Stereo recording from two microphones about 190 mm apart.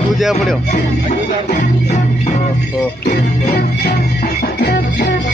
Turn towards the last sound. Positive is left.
turn(degrees=55)  # may be behind; listen again after turning